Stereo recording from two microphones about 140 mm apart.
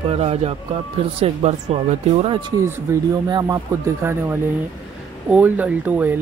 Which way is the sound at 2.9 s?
25° right (ahead or behind).